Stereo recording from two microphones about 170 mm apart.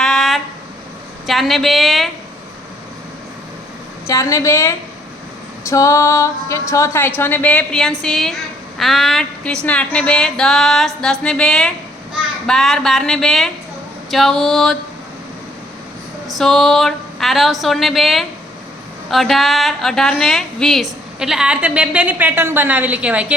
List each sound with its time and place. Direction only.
0.0 s a sound: centre (ahead or behind)
1.3 s speech: centre (ahead or behind)
4.0 s a woman's voice: 20° left (ahead or behind); by 14.8 s 5° left (ahead or behind)
16.3 s a woman's voice: centre (ahead or behind)